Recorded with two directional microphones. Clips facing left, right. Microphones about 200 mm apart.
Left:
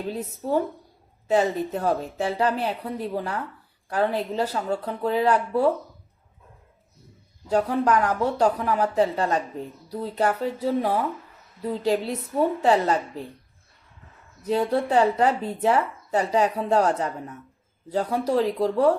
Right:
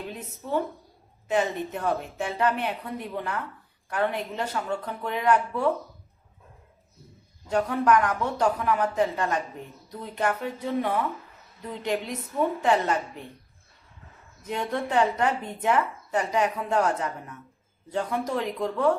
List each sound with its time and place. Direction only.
0.1 s speech: 40° left (ahead or behind)
7.4 s speech: 35° left (ahead or behind)
14.4 s speech: 35° left (ahead or behind)